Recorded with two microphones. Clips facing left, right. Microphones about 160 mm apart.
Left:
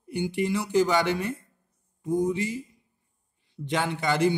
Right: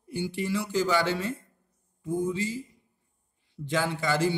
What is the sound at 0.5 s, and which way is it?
Speech, 60° left (ahead or behind).